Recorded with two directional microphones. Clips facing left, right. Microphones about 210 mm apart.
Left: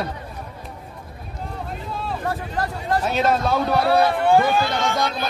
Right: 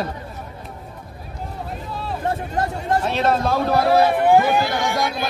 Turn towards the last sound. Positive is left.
turn(degrees=-15)  # may be behind; listen again after turning